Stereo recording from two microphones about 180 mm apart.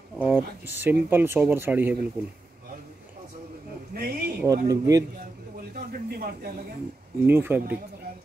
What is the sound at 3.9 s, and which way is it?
Speech, 60° right (ahead or behind).